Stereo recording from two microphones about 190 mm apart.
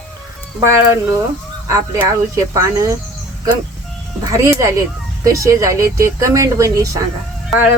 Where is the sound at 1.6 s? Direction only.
15° right (ahead or behind).